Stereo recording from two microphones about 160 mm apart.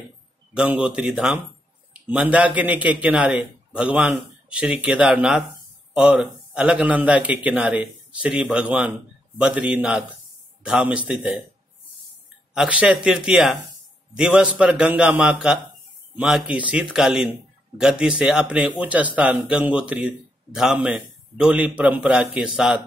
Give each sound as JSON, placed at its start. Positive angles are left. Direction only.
{"t": 0.6, "sound": "a man's voice", "side_deg": -5}
{"t": 12.5, "sound": "a man's voice", "side_deg": -10}